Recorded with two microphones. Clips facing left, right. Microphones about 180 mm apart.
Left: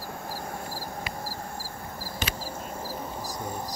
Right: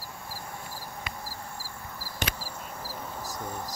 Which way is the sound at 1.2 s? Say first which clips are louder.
Left 4 dB; 45° left (ahead or behind).